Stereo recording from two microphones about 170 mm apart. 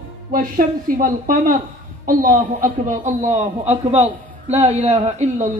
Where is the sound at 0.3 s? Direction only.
55° right (ahead or behind).